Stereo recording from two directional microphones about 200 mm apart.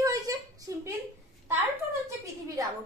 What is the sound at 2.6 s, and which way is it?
Speech, 15° right (ahead or behind).